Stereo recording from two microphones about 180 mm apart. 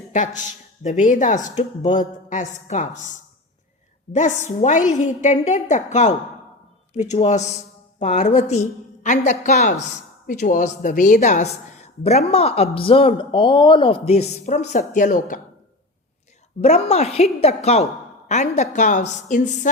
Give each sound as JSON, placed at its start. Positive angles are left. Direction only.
{"t": 0.1, "sound": "a woman's voice", "side_deg": 45}
{"t": 16.6, "sound": "a woman's voice", "side_deg": 35}